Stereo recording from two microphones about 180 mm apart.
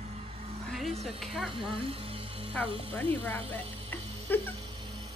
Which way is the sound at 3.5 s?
10° left (ahead or behind).